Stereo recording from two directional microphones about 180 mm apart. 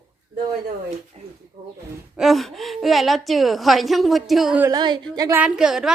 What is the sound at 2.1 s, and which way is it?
A woman's voice, centre (ahead or behind).